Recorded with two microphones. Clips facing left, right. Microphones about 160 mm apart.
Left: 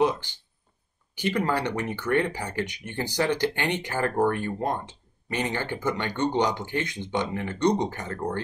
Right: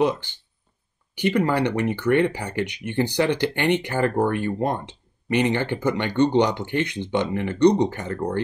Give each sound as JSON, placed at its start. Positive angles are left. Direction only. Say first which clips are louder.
{"t": 0.0, "sound": "speech", "louder": "right 2 dB", "side_deg": -60}